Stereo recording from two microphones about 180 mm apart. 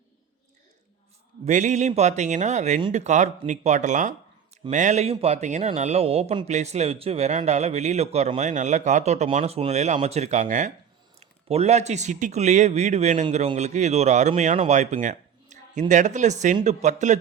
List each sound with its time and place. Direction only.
1.5 s a man's voice: 40° right (ahead or behind)